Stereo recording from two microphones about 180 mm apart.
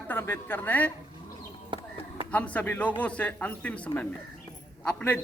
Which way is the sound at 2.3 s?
10° left (ahead or behind).